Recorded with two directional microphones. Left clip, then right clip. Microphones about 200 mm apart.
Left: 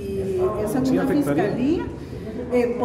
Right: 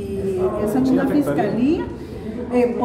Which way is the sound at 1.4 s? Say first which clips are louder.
Right 2 dB; 10° left (ahead or behind).